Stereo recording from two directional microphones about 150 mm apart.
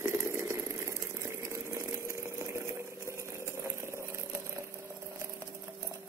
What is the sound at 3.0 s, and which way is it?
Engine, 20° right (ahead or behind).